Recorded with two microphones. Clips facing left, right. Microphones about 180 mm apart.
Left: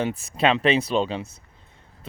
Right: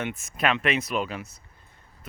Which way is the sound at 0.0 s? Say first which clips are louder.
Left 5 dB; 35° left (ahead or behind).